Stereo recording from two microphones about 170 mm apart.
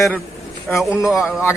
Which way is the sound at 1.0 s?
20° left (ahead or behind).